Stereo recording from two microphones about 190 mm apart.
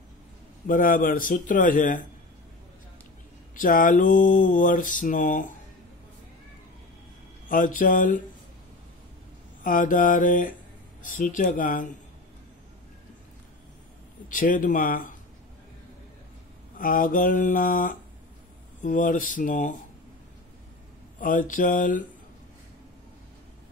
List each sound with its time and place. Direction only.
0.7 s mantra: 45° left (ahead or behind)
3.6 s mantra: 45° left (ahead or behind)
7.4 s mantra: 45° left (ahead or behind)
9.6 s mantra: 45° left (ahead or behind)
11.0 s a sound: 45° left (ahead or behind)
11.3 s mantra: 45° left (ahead or behind)
14.3 s mantra: 45° left (ahead or behind)
16.7 s mantra: 45° left (ahead or behind)
21.2 s mantra: 45° left (ahead or behind)